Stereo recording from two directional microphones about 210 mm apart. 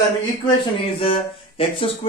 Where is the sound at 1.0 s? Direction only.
25° left (ahead or behind).